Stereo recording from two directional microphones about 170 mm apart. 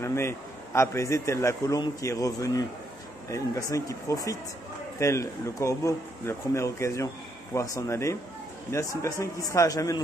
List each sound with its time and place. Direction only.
0.0 s a man's voice: 15° left (ahead or behind)